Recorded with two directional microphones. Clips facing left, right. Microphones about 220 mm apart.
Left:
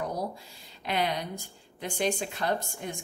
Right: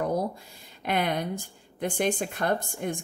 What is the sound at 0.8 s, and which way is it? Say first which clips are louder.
Speech: right 3 dB; 50° right (ahead or behind).